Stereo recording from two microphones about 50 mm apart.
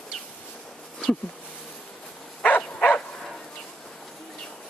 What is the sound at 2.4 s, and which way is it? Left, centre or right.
Bow-wow, left.